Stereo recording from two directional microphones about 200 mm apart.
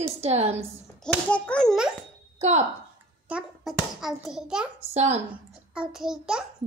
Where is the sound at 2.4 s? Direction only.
35° right (ahead or behind).